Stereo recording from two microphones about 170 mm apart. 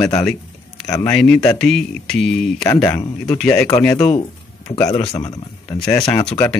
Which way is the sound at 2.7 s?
20° left (ahead or behind).